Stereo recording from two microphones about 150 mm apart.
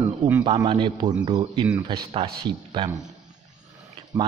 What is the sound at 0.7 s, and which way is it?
Speech, 35° right (ahead or behind).